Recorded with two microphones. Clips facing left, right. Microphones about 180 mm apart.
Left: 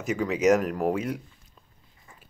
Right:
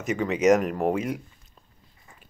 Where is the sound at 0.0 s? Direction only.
Centre (ahead or behind).